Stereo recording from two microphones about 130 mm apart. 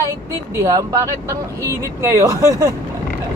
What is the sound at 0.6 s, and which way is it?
Speech, 25° right (ahead or behind).